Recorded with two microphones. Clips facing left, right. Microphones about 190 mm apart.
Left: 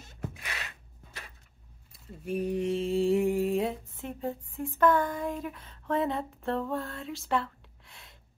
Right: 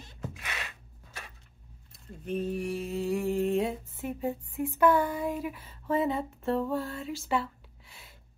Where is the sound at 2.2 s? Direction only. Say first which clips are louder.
Left 2 dB; 10° left (ahead or behind).